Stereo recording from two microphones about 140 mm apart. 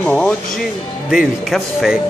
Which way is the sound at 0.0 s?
10° left (ahead or behind).